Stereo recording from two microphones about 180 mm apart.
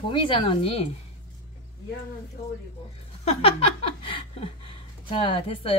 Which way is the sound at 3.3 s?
30° left (ahead or behind).